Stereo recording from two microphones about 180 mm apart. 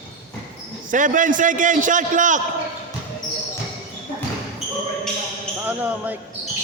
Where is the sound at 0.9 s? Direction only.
45° right (ahead or behind).